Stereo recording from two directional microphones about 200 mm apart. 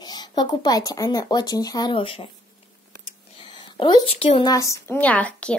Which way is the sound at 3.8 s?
25° left (ahead or behind).